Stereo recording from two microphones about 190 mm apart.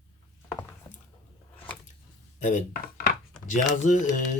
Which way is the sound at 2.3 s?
40° left (ahead or behind).